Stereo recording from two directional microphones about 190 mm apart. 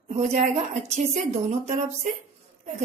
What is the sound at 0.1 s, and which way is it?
A woman's voice, 35° right (ahead or behind).